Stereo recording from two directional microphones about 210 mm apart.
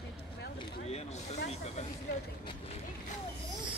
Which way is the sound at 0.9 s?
30° left (ahead or behind).